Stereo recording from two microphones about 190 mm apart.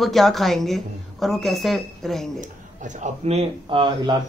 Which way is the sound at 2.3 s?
40° right (ahead or behind).